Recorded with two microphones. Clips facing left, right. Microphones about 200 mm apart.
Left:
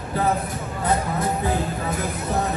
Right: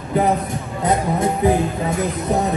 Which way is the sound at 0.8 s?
20° right (ahead or behind).